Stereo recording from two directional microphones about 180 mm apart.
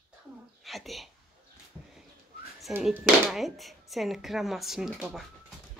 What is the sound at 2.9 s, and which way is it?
Speech, 5° right (ahead or behind).